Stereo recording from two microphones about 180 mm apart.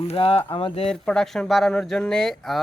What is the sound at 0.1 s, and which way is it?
Speech, 30° left (ahead or behind).